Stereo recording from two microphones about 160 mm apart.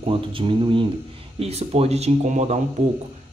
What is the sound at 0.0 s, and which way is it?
Speech, 35° right (ahead or behind).